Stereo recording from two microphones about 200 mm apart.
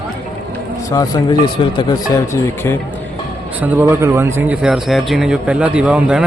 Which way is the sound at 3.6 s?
10° right (ahead or behind).